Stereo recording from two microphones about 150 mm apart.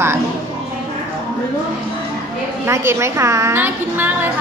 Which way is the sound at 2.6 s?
15° right (ahead or behind).